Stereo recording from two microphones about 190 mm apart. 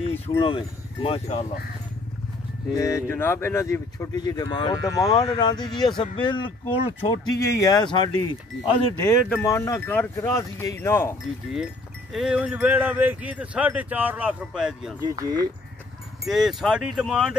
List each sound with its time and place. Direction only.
0.4 s speech: 25° left (ahead or behind)
2.7 s speech: 15° left (ahead or behind)
11.5 s speech: centre (ahead or behind)
15.0 s speech: 20° right (ahead or behind)
16.3 s speech: centre (ahead or behind)